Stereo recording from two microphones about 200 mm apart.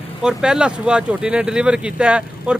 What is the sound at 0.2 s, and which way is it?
Speech, 5° right (ahead or behind).